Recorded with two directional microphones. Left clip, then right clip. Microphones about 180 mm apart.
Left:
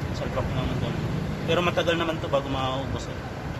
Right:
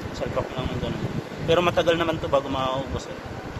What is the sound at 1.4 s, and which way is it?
Speech, 40° right (ahead or behind).